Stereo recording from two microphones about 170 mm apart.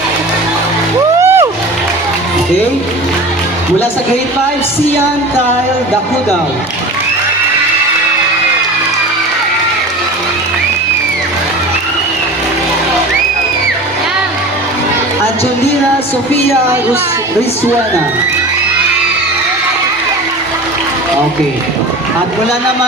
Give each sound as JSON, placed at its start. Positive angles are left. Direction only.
{"t": 1.2, "sound": "music", "side_deg": -15}